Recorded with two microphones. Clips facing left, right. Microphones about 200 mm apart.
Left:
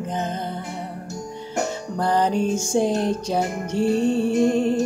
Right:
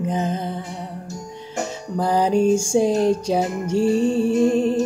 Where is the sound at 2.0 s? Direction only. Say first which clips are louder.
Right 3 dB; 5° right (ahead or behind).